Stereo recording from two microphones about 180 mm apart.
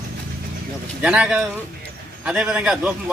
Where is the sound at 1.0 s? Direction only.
5° right (ahead or behind).